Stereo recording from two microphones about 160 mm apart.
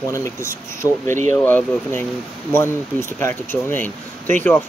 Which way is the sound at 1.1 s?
50° right (ahead or behind).